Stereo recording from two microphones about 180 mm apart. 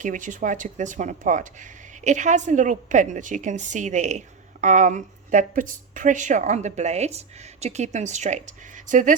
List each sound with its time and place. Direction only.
0.0 s speech: 45° right (ahead or behind)